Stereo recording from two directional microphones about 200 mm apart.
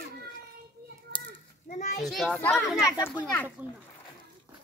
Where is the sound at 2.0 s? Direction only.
Centre (ahead or behind).